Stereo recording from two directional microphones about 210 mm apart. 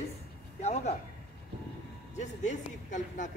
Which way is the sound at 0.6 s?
30° left (ahead or behind).